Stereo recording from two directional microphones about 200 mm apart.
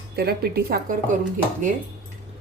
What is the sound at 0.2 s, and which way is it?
Speech, 55° right (ahead or behind).